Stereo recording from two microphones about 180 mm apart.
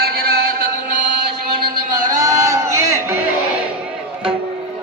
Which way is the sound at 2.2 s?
20° right (ahead or behind).